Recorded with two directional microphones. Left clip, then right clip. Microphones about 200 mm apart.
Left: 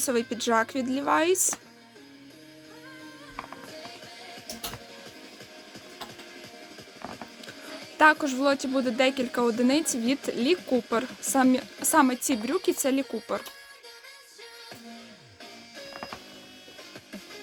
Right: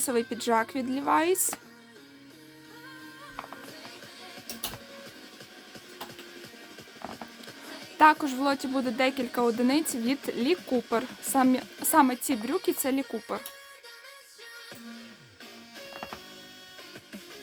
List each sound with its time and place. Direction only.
0.0 s speech: 5° right (ahead or behind)
7.9 s speech: 5° right (ahead or behind)
15.9 s music: 20° left (ahead or behind)